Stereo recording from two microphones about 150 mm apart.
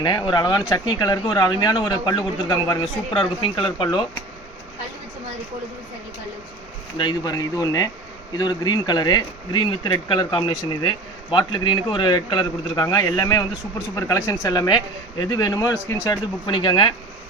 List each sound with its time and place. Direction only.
0.0 s speech: 30° left (ahead or behind)
6.9 s speech: 30° left (ahead or behind)
16.5 s speech: 30° left (ahead or behind)